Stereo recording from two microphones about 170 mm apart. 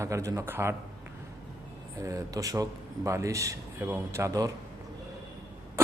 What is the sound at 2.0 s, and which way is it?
A man's voice, 20° right (ahead or behind).